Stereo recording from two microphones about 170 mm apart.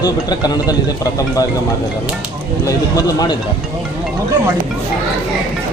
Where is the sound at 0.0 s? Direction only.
25° left (ahead or behind).